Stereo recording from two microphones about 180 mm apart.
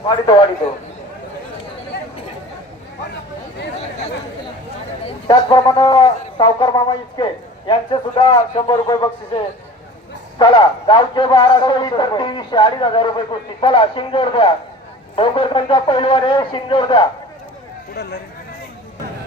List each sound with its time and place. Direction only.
0.0 s a man's voice: 25° left (ahead or behind)
5.0 s a man's voice: 25° left (ahead or behind)
10.3 s a man's voice: 25° left (ahead or behind)
17.9 s speech: 65° left (ahead or behind)